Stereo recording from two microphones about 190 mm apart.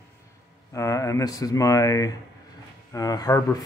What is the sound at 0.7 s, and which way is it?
Speech, 15° left (ahead or behind).